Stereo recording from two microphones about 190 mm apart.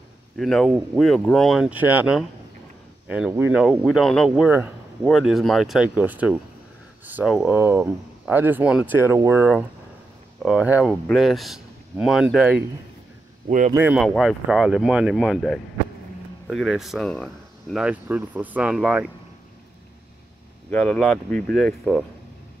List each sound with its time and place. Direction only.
0.4 s speech: centre (ahead or behind)
3.8 s speech: centre (ahead or behind)
13.5 s speech: 40° right (ahead or behind)
13.7 s speech: 10° right (ahead or behind)
20.7 s speech: 5° left (ahead or behind)